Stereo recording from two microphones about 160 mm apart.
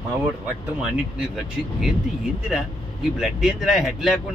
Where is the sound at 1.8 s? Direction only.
5° right (ahead or behind).